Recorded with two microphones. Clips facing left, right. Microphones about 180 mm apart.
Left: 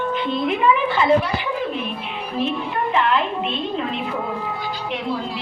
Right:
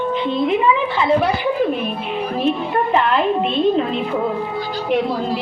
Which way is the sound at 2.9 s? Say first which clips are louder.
Right 3 dB; 40° right (ahead or behind).